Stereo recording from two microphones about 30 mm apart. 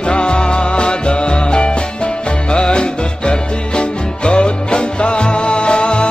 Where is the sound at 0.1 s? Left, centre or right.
Left.